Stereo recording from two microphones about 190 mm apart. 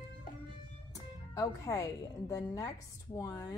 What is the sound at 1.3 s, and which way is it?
A woman's voice, 15° left (ahead or behind).